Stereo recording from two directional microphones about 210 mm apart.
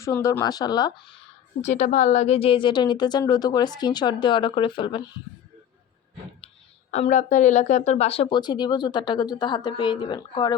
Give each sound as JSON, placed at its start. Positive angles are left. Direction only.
{"t": 0.0, "sound": "speech", "side_deg": 15}
{"t": 1.6, "sound": "speech", "side_deg": 35}
{"t": 6.9, "sound": "speech", "side_deg": 35}